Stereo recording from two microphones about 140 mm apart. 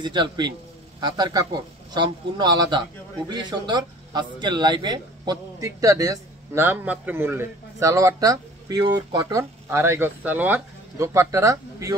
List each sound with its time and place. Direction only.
0.0 s a man's voice: 30° right (ahead or behind)